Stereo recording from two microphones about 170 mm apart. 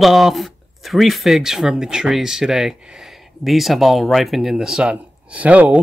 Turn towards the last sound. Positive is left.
turn(degrees=-10)  # may be behind; listen again after turning